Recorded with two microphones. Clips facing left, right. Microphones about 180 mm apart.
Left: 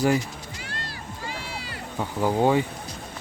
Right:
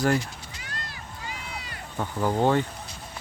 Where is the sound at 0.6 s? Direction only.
30° left (ahead or behind).